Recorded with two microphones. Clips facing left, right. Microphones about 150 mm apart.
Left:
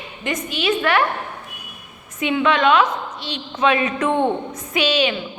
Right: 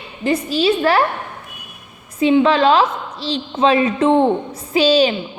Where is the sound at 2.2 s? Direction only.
30° right (ahead or behind).